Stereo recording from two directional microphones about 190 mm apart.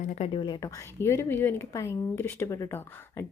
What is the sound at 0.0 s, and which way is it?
Speech, 40° left (ahead or behind).